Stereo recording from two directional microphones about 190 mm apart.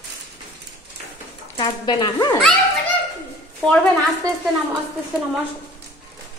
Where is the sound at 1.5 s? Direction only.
25° left (ahead or behind).